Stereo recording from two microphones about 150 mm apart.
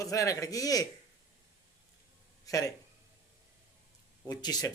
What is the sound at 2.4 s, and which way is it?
Speech, 25° left (ahead or behind).